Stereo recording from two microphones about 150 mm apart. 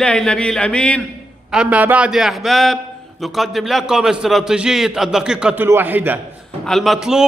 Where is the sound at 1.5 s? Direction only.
10° right (ahead or behind).